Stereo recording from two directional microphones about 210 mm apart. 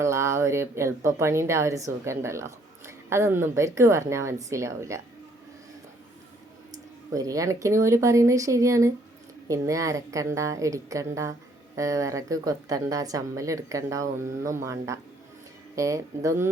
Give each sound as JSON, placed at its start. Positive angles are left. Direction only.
{"t": 0.0, "sound": "speech", "side_deg": -15}
{"t": 7.1, "sound": "speech", "side_deg": -15}